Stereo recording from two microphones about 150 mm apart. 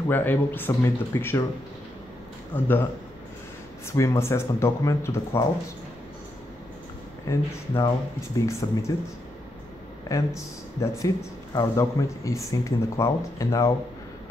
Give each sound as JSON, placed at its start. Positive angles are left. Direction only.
{"t": 0.1, "sound": "speech", "side_deg": 15}
{"t": 2.5, "sound": "speech", "side_deg": 15}
{"t": 7.2, "sound": "speech", "side_deg": 25}
{"t": 10.0, "sound": "speech", "side_deg": 20}